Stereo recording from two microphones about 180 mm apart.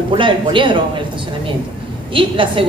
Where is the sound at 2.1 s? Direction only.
30° right (ahead or behind).